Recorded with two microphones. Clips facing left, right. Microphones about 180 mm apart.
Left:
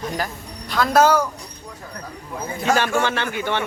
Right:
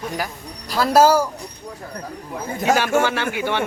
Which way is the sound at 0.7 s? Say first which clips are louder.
Right 2 dB; 5° right (ahead or behind).